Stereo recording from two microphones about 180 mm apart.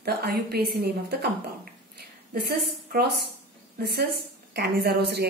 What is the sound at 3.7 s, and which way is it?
A woman's voice, 65° right (ahead or behind).